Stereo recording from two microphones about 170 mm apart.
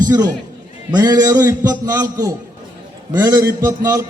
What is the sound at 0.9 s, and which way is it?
A man's voice, 20° right (ahead or behind).